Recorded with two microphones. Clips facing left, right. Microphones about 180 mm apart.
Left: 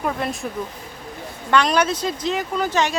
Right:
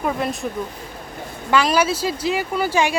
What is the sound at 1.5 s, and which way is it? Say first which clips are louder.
Speech: right 1 dB; 5° right (ahead or behind).